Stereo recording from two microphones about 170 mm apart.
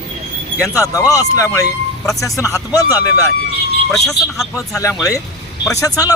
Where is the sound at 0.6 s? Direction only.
20° left (ahead or behind).